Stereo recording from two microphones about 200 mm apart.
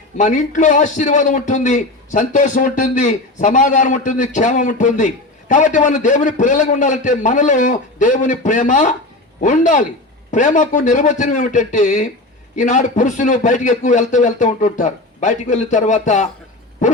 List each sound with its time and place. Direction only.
0.2 s a man's voice: 40° left (ahead or behind)